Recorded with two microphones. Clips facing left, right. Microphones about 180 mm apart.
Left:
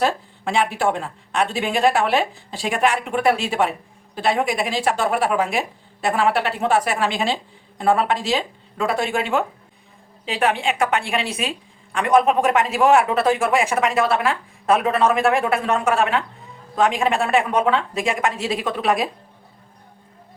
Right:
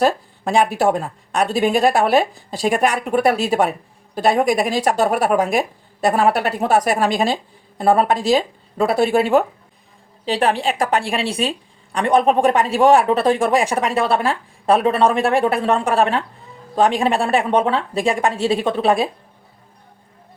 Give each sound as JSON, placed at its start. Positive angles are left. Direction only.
{"t": 0.0, "sound": "a woman's voice", "side_deg": -40}